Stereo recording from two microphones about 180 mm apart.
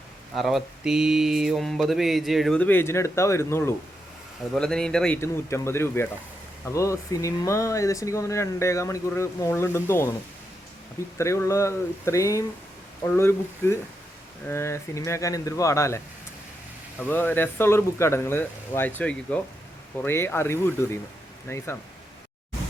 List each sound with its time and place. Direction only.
0.3 s speech: centre (ahead or behind)
4.5 s speech: 5° left (ahead or behind)
11.2 s speech: 15° left (ahead or behind)
17.0 s speech: 10° left (ahead or behind)